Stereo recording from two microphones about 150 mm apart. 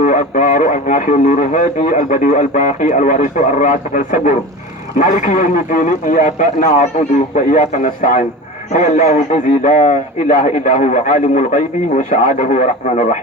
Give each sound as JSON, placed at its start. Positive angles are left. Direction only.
{"t": 0.0, "sound": "a man's voice", "side_deg": 60}